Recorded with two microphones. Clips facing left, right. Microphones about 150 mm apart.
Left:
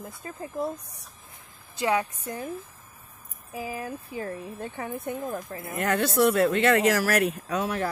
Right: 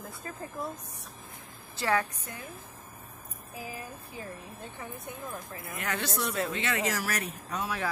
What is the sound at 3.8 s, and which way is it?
Speech, 65° left (ahead or behind).